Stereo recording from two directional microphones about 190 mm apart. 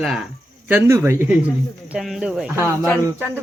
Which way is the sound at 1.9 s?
Centre (ahead or behind).